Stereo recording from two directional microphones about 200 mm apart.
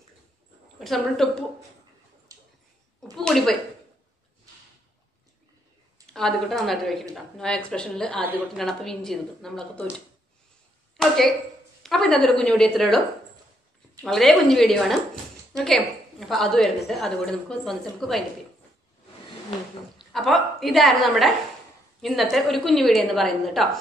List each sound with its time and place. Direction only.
0.7 s a woman's voice: centre (ahead or behind)
2.3 s dog: 15° right (ahead or behind)
3.2 s a sound: centre (ahead or behind)
6.1 s a woman's voice: centre (ahead or behind)
11.0 s a sound: centre (ahead or behind)
11.8 s a woman's voice: centre (ahead or behind)
14.0 s a woman's voice: centre (ahead or behind)
20.0 s a woman's voice: centre (ahead or behind)